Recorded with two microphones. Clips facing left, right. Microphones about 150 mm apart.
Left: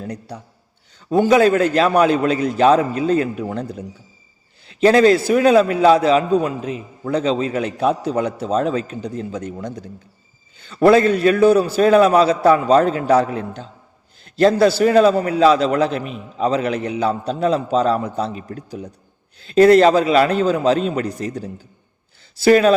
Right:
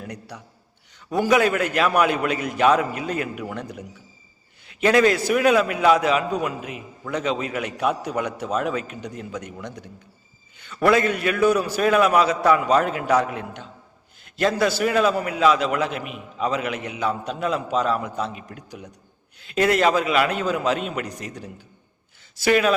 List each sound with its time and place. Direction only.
0.0 s a man's voice: 30° left (ahead or behind)